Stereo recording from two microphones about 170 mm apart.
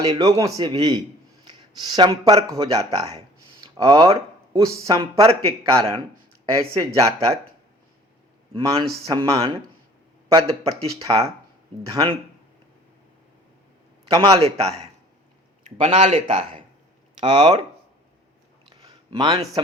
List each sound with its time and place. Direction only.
0.0 s speech: 20° right (ahead or behind)
5.2 s a man's voice: 35° right (ahead or behind)
6.4 s speech: 20° right (ahead or behind)
8.5 s speech: 25° right (ahead or behind)
10.4 s a man's voice: 35° right (ahead or behind)
14.1 s speech: 25° right (ahead or behind)
15.8 s a man's voice: 35° right (ahead or behind)
18.7 s a sound: 20° right (ahead or behind)